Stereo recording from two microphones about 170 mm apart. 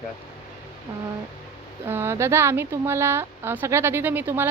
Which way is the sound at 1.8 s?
15° right (ahead or behind).